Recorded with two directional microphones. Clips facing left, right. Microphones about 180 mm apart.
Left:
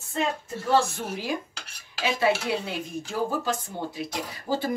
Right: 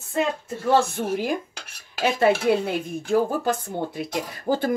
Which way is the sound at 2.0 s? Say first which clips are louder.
Right 4 dB; 50° right (ahead or behind).